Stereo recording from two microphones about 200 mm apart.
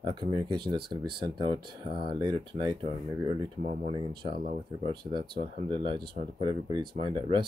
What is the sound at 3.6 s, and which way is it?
Speech, 35° right (ahead or behind).